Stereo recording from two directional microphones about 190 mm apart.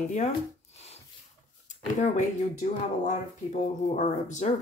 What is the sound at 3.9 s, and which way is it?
Speech, 40° left (ahead or behind).